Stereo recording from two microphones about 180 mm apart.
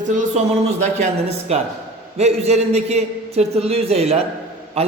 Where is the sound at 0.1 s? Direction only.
45° right (ahead or behind).